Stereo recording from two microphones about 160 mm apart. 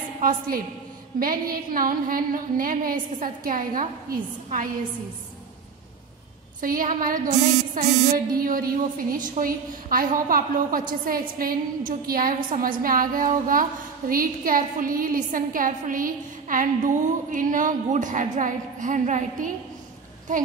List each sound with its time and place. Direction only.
0.2 s a woman's voice: 60° right (ahead or behind)
6.6 s a woman's voice: 60° right (ahead or behind)
8.4 s a woman's voice: 65° right (ahead or behind)